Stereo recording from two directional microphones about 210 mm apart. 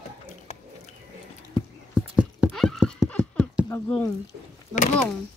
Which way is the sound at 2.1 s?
Centre (ahead or behind).